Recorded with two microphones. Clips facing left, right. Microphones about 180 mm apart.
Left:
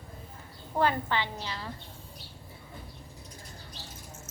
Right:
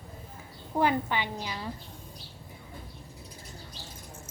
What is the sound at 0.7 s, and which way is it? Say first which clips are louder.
Speech: right 1 dB; 15° right (ahead or behind).